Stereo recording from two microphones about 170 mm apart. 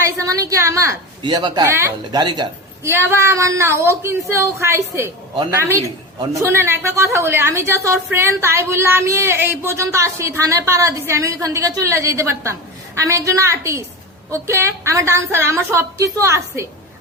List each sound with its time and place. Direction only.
0.2 s a woman's voice: 20° right (ahead or behind)